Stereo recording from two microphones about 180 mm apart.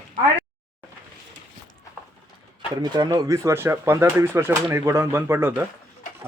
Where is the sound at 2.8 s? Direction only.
20° right (ahead or behind).